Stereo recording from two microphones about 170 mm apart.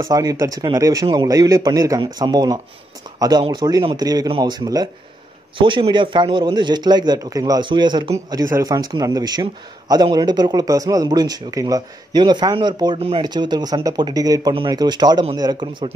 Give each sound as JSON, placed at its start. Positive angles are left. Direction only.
{"t": 0.1, "sound": "speech", "side_deg": -20}